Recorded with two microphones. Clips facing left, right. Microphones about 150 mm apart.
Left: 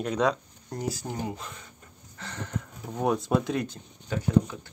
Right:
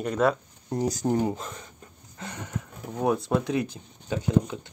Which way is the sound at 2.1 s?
15° right (ahead or behind).